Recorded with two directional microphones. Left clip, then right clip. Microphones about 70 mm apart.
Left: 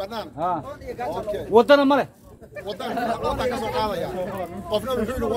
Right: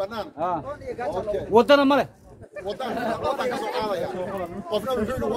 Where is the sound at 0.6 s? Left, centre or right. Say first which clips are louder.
Even; centre.